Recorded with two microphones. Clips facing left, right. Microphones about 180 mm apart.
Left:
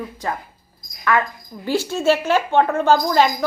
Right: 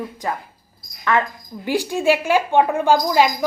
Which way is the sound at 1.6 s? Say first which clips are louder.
Even; 15° right (ahead or behind).